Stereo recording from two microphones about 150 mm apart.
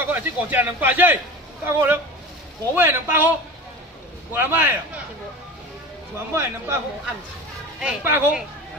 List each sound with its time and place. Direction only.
0.0 s a man's voice: 10° right (ahead or behind)
6.1 s speech: 15° right (ahead or behind)
7.8 s speech: 15° right (ahead or behind)